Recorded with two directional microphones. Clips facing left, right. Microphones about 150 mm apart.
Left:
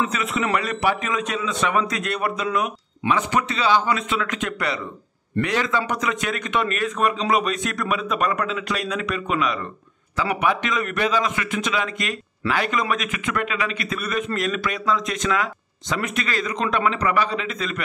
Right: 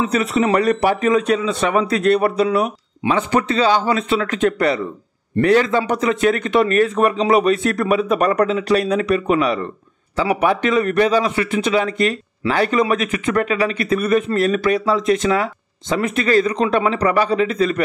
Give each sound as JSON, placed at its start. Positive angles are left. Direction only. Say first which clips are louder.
{"t": 0.0, "sound": "a man's voice", "louder": "right 6 dB", "side_deg": -35}